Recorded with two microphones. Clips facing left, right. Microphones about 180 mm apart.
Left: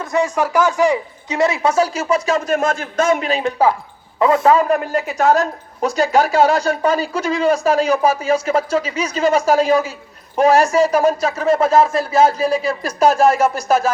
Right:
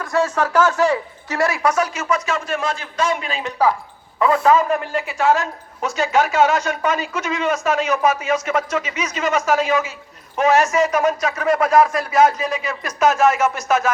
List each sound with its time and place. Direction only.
0.0 s speech: 15° left (ahead or behind); by 3.5 s 40° left (ahead or behind)
4.2 s a woman's voice: 25° left (ahead or behind)